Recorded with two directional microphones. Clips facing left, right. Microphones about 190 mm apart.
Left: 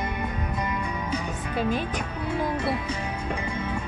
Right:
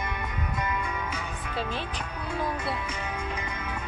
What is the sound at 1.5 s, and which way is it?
Speech, 10° left (ahead or behind).